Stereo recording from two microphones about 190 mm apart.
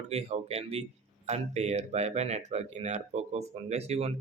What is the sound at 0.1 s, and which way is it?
Speech, 35° right (ahead or behind).